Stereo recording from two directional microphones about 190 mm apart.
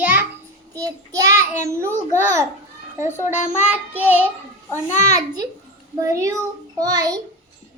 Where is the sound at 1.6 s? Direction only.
15° right (ahead or behind).